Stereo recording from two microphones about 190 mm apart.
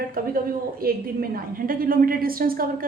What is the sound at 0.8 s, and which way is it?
A woman's voice, 50° right (ahead or behind).